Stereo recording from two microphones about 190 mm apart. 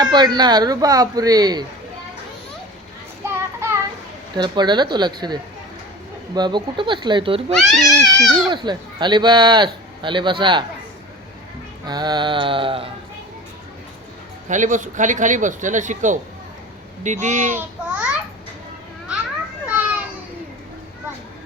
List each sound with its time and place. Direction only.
0.0 s speech: 20° right (ahead or behind)
3.2 s child singing: 15° right (ahead or behind)
4.4 s speech: 25° right (ahead or behind)
7.5 s speech: centre (ahead or behind)
8.3 s speech: 25° right (ahead or behind)
11.9 s speech: 20° right (ahead or behind)
14.4 s speech: 40° right (ahead or behind)
17.6 s babbling: 5° right (ahead or behind)
19.6 s children playing: 10° right (ahead or behind)